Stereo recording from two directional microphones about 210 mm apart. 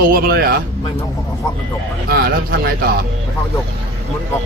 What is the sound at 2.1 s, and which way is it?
Speech, 50° right (ahead or behind).